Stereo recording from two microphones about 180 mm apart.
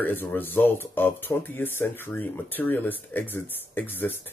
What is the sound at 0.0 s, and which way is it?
Speech, 10° left (ahead or behind).